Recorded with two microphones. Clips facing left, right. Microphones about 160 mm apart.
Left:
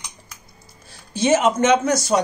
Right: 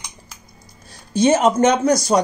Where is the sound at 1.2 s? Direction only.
40° right (ahead or behind).